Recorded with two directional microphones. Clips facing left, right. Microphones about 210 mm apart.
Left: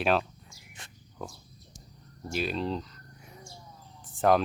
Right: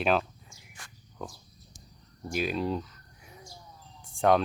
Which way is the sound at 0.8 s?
25° left (ahead or behind).